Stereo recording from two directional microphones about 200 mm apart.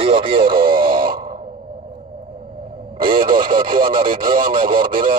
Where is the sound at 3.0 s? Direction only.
25° right (ahead or behind).